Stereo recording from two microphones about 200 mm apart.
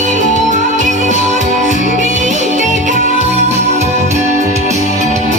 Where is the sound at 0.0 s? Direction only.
35° right (ahead or behind).